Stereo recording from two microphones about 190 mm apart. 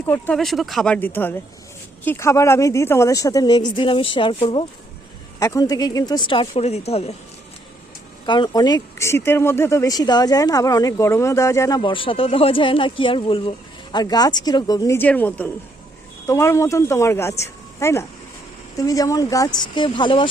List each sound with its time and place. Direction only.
0.1 s a woman's voice: 5° left (ahead or behind); by 7.2 s 35° left (ahead or behind)
8.3 s speech: 20° left (ahead or behind)
11.8 s speech: 25° left (ahead or behind)